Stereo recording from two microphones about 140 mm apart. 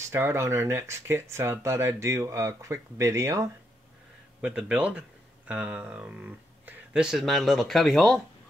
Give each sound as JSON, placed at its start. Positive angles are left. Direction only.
{"t": 0.1, "sound": "speech", "side_deg": -20}
{"t": 4.4, "sound": "speech", "side_deg": -5}